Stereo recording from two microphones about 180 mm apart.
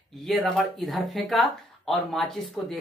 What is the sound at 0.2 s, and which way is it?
Speech, centre (ahead or behind).